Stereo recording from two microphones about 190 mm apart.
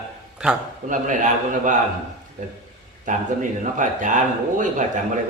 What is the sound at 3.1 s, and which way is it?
A man's voice, 45° right (ahead or behind).